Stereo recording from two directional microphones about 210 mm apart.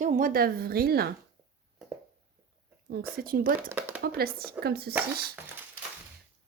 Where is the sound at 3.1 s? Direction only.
45° right (ahead or behind).